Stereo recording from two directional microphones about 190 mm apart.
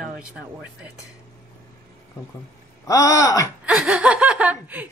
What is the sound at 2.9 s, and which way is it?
Speech, 15° left (ahead or behind).